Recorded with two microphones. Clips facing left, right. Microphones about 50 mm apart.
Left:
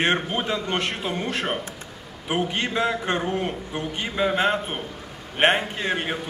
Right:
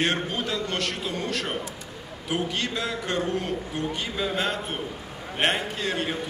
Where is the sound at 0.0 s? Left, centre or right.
Left.